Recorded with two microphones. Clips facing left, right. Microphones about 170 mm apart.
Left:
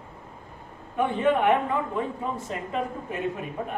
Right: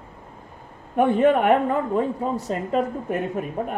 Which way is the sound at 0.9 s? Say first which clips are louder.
Right 6 dB; 50° right (ahead or behind).